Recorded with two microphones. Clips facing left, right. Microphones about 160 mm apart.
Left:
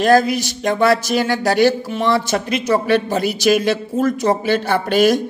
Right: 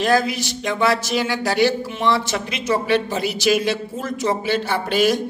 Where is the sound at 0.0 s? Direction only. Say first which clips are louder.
Left 5 dB; 45° left (ahead or behind).